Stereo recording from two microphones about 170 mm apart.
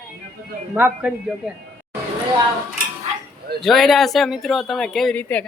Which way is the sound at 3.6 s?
Centre (ahead or behind).